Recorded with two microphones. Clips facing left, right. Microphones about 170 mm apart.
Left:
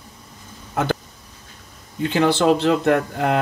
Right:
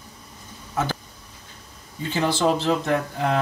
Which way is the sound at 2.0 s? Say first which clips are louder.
Left 5 dB; 65° left (ahead or behind).